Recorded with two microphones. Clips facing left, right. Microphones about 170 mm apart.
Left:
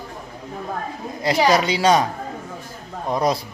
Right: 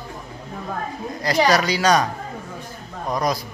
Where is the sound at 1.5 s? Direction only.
25° left (ahead or behind).